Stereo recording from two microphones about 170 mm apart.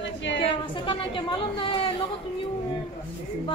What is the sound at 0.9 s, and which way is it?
A woman's voice, 30° left (ahead or behind).